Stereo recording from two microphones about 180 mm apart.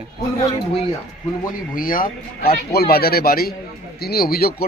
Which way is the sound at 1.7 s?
50° left (ahead or behind).